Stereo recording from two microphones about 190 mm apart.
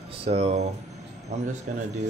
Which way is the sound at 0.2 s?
30° right (ahead or behind).